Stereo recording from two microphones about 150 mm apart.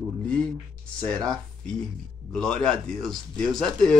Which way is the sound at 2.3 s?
5° left (ahead or behind).